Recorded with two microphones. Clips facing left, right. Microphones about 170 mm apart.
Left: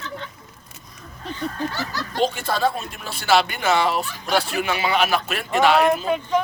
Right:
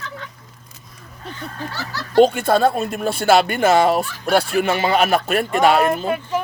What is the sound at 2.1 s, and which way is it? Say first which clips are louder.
Speech: right 9 dB; 55° right (ahead or behind).